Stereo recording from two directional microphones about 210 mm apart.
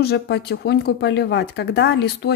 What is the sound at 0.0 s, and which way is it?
Speech, 50° left (ahead or behind).